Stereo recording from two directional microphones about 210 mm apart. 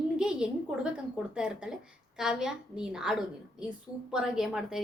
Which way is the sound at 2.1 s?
5° right (ahead or behind).